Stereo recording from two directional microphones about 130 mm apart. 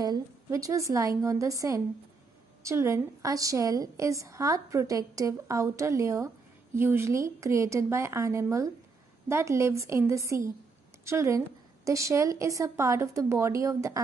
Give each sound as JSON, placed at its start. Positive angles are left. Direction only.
{"t": 0.0, "sound": "a woman's voice", "side_deg": -30}